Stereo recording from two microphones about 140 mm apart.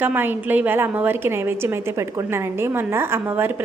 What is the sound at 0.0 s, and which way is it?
A woman's voice, 15° right (ahead or behind).